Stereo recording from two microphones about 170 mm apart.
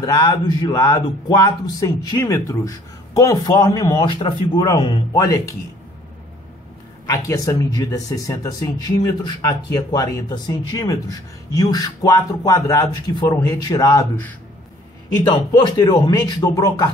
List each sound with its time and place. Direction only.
0.0 s speech: 20° left (ahead or behind)
7.1 s speech: 20° left (ahead or behind)
15.3 s speech: 25° left (ahead or behind)